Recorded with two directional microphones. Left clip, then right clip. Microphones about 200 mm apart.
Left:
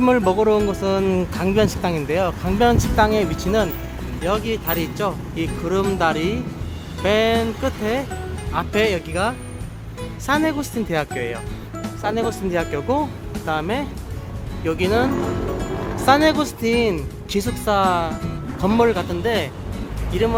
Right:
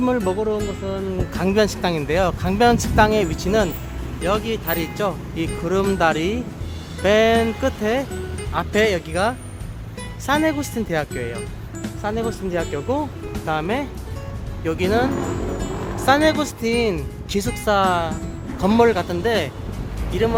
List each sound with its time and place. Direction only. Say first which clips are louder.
0.0 s speech: left 4 dB; centre (ahead or behind)
1.3 s speech: even; 5° right (ahead or behind)
13.4 s speech: even; 15° right (ahead or behind)
18.6 s speech: right 1 dB; 15° right (ahead or behind)